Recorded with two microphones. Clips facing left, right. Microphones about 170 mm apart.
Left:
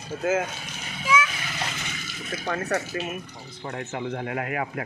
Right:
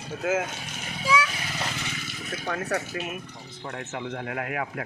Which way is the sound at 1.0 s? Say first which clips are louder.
Even; 35° right (ahead or behind).